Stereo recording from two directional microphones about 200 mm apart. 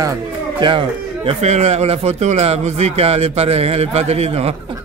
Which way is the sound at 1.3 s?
35° right (ahead or behind).